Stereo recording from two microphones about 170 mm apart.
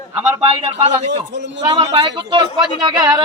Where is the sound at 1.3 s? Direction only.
90° right.